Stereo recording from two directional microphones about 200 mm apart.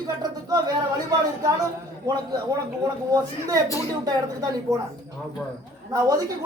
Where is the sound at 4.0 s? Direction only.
20° right (ahead or behind).